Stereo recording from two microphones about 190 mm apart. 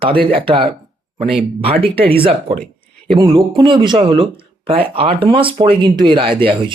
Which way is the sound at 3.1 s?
25° right (ahead or behind).